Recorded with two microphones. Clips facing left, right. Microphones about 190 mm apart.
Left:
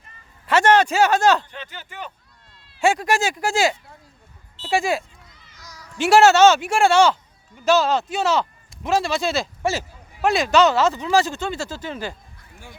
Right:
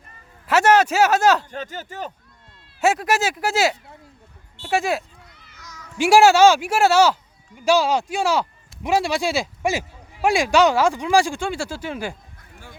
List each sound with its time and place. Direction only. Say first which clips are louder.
0.4 s speech: even; 5° right (ahead or behind)
1.5 s speech: right 6 dB; 45° right (ahead or behind)
2.8 s speech: even; 5° right (ahead or behind)
5.5 s cat: right 1 dB; 35° left (ahead or behind)
6.0 s speech: even; 10° right (ahead or behind)